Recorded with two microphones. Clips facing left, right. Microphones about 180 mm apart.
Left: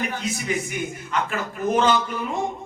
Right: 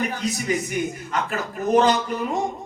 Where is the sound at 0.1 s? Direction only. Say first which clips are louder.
Right 2 dB; 40° right (ahead or behind).